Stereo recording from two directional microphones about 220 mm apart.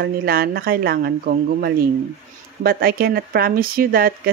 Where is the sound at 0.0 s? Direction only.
45° right (ahead or behind).